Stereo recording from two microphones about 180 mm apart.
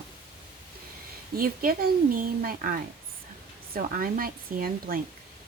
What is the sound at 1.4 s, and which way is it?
Speech, 55° right (ahead or behind).